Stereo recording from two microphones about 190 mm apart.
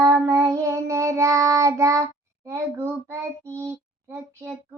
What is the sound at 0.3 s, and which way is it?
Child singing, 15° right (ahead or behind).